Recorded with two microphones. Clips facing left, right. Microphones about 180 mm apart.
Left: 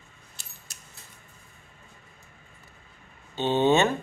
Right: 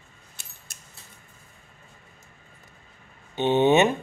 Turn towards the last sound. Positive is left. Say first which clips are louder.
# right 3 dB
turn(degrees=-15)  # may be behind; listen again after turning